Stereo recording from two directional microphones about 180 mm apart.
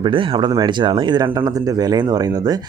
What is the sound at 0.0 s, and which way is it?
Speech, 30° right (ahead or behind).